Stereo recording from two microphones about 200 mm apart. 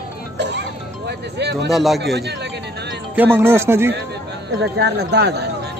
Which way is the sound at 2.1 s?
55° right (ahead or behind).